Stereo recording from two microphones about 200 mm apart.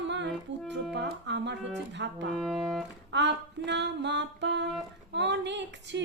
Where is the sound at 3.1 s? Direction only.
60° right (ahead or behind).